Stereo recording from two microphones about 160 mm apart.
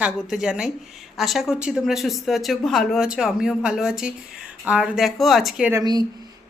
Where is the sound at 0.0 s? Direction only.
5° right (ahead or behind).